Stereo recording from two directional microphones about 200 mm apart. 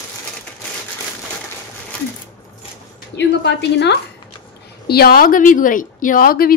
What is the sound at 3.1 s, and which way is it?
A woman's voice, 60° left (ahead or behind).